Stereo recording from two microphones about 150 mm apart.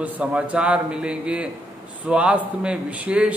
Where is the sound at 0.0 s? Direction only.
10° right (ahead or behind).